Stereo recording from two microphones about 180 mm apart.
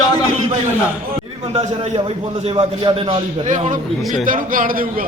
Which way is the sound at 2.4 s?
30° right (ahead or behind).